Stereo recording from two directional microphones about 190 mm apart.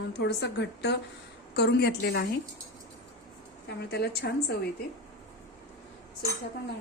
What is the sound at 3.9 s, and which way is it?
Speech, 60° left (ahead or behind).